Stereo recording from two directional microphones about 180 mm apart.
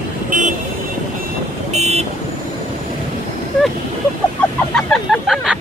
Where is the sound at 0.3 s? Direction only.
45° right (ahead or behind).